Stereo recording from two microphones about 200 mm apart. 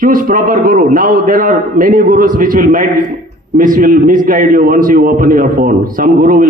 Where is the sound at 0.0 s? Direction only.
45° right (ahead or behind).